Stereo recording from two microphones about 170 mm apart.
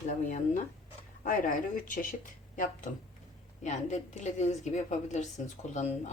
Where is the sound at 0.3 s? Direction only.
45° left (ahead or behind).